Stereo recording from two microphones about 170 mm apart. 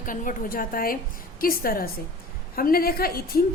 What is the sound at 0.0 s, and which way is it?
A woman's voice, 50° left (ahead or behind).